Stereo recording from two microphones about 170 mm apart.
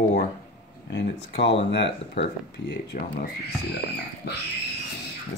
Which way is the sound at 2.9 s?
50° left (ahead or behind).